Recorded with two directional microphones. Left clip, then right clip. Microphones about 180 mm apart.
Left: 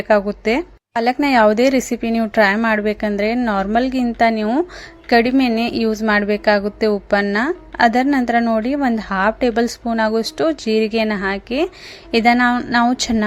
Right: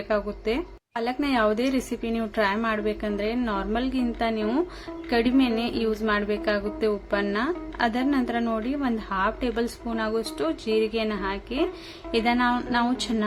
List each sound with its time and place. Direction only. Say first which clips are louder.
0.1 s a woman's voice: left 11 dB; 45° left (ahead or behind)